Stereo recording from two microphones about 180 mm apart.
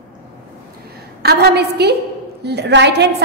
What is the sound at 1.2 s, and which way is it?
A woman's voice, 65° right (ahead or behind).